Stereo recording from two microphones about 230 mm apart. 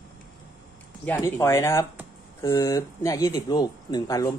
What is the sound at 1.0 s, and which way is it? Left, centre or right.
Speech, centre.